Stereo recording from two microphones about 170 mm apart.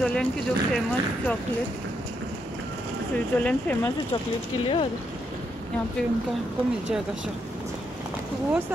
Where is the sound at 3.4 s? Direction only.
10° left (ahead or behind).